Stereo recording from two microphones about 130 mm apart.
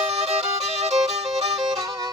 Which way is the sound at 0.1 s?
55° right (ahead or behind).